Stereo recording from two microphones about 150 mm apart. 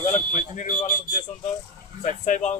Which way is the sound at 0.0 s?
60° left (ahead or behind).